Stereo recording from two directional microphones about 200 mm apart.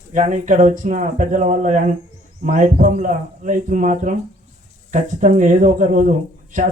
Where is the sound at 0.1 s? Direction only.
40° right (ahead or behind).